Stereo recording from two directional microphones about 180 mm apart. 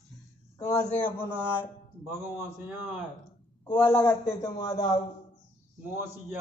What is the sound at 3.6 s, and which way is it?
A man's voice, 10° left (ahead or behind).